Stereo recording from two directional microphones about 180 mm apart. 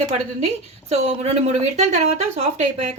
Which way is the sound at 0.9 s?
35° right (ahead or behind).